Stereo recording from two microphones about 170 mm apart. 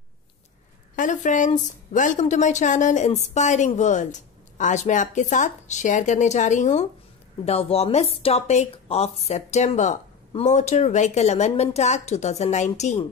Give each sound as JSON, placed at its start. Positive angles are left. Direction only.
{"t": 0.9, "sound": "a woman's voice", "side_deg": 50}